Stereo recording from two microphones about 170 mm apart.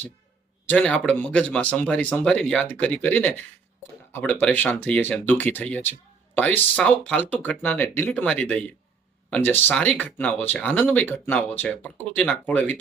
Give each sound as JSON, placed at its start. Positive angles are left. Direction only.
{"t": 0.7, "sound": "speech", "side_deg": 5}